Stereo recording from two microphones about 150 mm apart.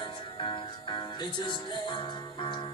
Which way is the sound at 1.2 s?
30° left (ahead or behind).